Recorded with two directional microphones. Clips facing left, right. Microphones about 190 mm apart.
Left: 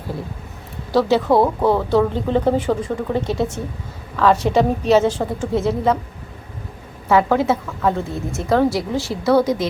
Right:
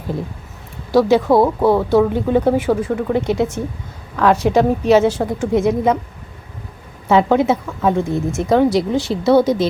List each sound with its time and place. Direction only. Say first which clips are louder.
0.9 s speech: right 3 dB; 15° right (ahead or behind)
7.1 s speech: right 2 dB; 20° right (ahead or behind)